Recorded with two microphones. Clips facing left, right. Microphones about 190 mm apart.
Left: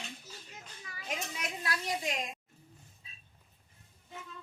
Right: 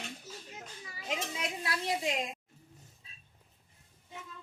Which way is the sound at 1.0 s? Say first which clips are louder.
Right 3 dB; 25° right (ahead or behind).